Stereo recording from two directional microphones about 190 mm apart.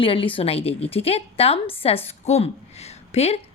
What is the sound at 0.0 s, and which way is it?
A woman's voice, 30° left (ahead or behind).